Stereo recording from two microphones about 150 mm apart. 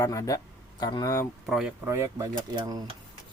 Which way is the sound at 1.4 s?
5° right (ahead or behind).